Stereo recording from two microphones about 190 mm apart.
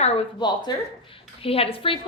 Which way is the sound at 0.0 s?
30° left (ahead or behind).